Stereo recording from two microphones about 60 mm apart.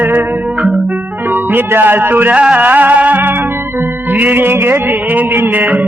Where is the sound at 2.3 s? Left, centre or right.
Centre; by 4.7 s right.